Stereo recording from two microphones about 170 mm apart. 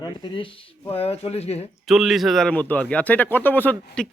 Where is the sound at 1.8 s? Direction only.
Centre (ahead or behind).